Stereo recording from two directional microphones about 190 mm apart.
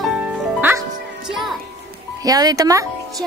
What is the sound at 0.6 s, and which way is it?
Music, 10° right (ahead or behind).